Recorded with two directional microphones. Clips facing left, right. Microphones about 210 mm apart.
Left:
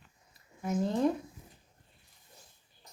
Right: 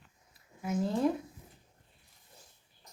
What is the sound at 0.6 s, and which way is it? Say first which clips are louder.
Speech: left 1 dB; centre (ahead or behind).